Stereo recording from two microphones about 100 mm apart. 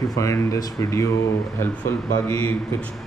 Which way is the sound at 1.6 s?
25° left (ahead or behind).